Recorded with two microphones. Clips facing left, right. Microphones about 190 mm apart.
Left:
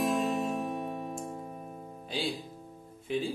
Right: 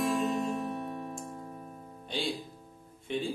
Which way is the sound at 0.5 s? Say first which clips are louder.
Left 1 dB; 15° left (ahead or behind).